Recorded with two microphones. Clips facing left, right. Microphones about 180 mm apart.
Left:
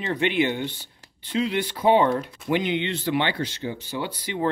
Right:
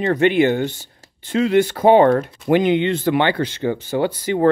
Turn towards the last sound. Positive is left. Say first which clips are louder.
# right 10 dB
turn(degrees=-50)  # may be behind; listen again after turning